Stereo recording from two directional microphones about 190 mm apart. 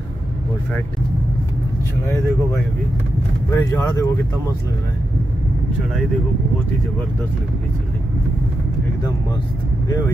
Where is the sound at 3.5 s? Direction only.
15° left (ahead or behind).